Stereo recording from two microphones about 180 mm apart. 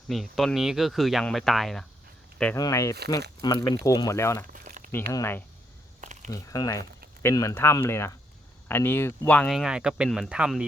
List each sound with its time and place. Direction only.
0.1 s speech: centre (ahead or behind)
2.6 s speech: 20° left (ahead or behind)
4.5 s crumpling: 45° right (ahead or behind)
4.9 s speech: 15° left (ahead or behind)
6.0 s crumpling: 45° right (ahead or behind)
6.3 s speech: 20° left (ahead or behind); by 10.7 s 5° right (ahead or behind)